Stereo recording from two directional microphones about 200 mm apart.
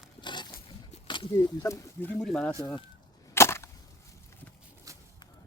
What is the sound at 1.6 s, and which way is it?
Speech, 10° left (ahead or behind).